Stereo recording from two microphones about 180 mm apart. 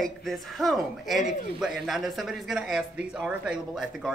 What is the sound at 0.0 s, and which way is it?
Speech, centre (ahead or behind).